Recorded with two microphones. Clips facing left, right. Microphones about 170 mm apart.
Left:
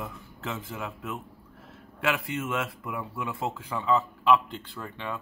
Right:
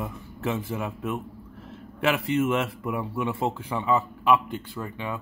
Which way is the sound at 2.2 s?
25° right (ahead or behind).